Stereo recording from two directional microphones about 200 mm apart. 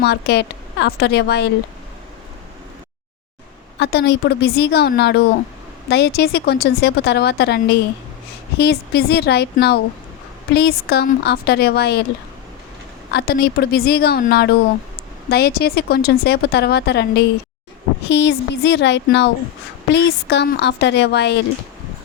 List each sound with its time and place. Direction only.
0.0 s a woman's voice: 55° left (ahead or behind)
3.8 s a woman's voice: 55° left (ahead or behind)
13.1 s a woman's voice: 50° left (ahead or behind)